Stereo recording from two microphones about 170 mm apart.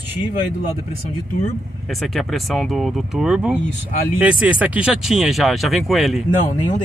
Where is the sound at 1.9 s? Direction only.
Centre (ahead or behind).